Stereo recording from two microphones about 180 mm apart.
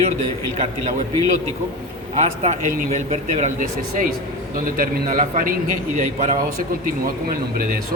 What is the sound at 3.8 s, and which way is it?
A man's voice, 55° right (ahead or behind).